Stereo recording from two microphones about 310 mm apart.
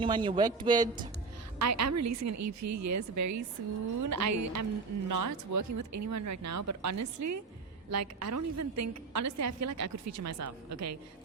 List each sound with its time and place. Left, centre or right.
0.0 s speech: centre
1.5 s a woman's voice: right
5.0 s a woman's voice: right